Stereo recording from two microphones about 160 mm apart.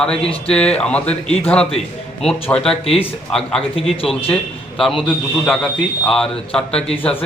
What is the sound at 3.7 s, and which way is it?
Speech, 35° left (ahead or behind).